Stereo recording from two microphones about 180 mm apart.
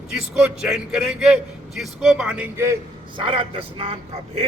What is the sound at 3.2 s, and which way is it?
Speech, 30° right (ahead or behind).